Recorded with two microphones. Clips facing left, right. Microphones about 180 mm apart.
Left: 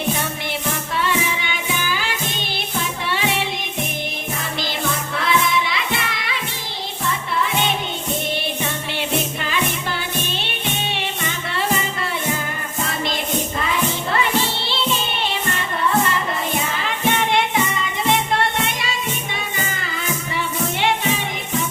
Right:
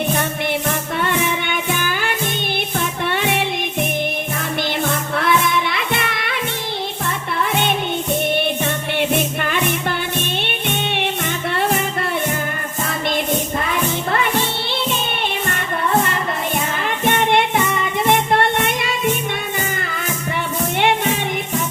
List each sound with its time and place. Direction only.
0.9 s music: 55° right (ahead or behind)
5.1 s music: 55° right (ahead or behind)
8.6 s music: 55° right (ahead or behind)
10.9 s music: 60° right (ahead or behind)
16.8 s music: 55° right (ahead or behind)
20.7 s music: 55° right (ahead or behind)